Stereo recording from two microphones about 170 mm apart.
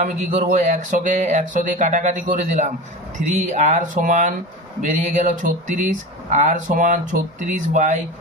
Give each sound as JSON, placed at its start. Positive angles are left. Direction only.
{"t": 0.0, "sound": "speech", "side_deg": -45}